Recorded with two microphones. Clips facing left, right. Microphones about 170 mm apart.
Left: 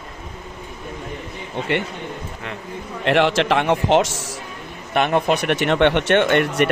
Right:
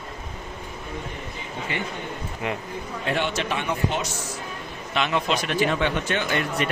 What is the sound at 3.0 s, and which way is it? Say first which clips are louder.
A man's voice: left 9 dB; 90° left.